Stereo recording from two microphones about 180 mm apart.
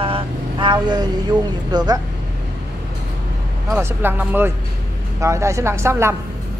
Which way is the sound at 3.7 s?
10° right (ahead or behind).